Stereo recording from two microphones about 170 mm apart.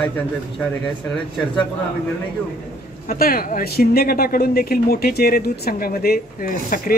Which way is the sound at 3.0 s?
60° left (ahead or behind).